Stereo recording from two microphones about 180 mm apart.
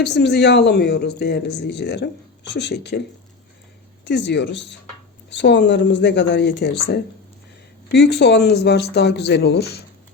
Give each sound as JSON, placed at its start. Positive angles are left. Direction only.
{"t": 0.0, "sound": "speech", "side_deg": 70}
{"t": 4.0, "sound": "speech", "side_deg": 75}